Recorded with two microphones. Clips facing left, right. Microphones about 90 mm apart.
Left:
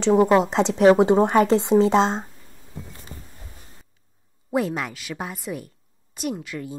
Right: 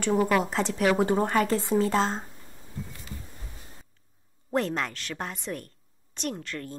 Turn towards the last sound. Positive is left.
turn(degrees=5)  # may be behind; listen again after turning